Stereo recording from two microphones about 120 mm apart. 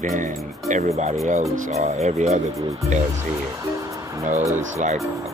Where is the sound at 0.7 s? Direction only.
75° right (ahead or behind).